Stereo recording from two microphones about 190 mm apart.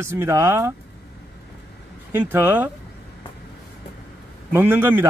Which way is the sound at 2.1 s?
10° right (ahead or behind).